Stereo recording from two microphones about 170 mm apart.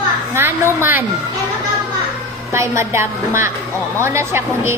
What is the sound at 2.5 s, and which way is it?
A woman's voice, 15° right (ahead or behind).